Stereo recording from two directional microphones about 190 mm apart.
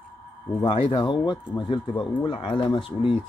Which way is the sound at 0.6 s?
25° left (ahead or behind).